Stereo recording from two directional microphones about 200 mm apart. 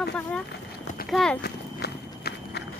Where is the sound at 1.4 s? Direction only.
55° left (ahead or behind).